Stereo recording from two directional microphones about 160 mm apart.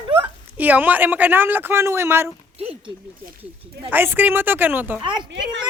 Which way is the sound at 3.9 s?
15° right (ahead or behind).